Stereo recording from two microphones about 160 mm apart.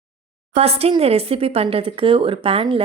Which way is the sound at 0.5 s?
40° right (ahead or behind).